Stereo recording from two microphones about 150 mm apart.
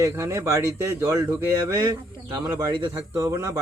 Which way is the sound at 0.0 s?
20° right (ahead or behind).